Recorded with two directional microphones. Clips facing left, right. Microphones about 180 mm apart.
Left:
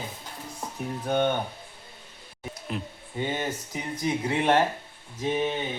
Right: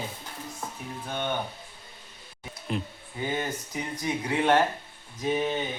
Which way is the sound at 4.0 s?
25° left (ahead or behind).